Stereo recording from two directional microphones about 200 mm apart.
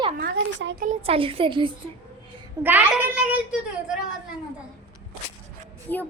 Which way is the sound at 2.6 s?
10° right (ahead or behind).